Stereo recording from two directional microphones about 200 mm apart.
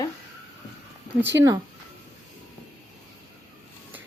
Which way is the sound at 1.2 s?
65° right (ahead or behind).